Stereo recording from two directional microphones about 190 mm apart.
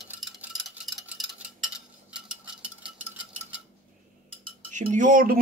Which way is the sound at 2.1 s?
5° right (ahead or behind).